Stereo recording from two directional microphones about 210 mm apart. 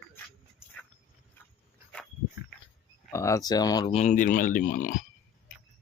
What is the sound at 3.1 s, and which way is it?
Speech, 15° left (ahead or behind).